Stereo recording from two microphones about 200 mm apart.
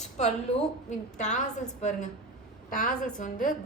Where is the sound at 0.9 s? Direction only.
35° left (ahead or behind).